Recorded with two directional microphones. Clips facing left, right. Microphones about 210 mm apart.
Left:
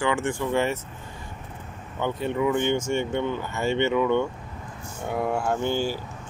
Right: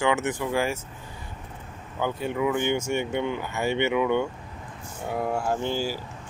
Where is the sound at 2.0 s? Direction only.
5° right (ahead or behind).